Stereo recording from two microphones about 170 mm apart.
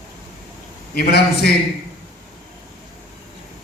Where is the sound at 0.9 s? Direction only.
70° left (ahead or behind).